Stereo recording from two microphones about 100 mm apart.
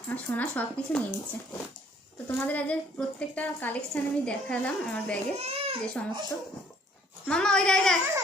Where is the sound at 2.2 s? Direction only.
15° left (ahead or behind).